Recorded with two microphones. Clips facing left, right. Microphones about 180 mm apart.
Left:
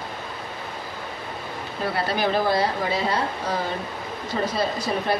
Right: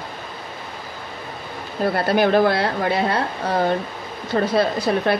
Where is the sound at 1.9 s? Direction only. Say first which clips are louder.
Right 6 dB; 55° right (ahead or behind).